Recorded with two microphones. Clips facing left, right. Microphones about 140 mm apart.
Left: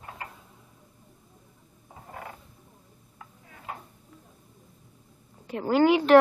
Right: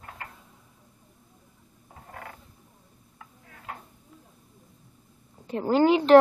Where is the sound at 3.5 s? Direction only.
10° left (ahead or behind).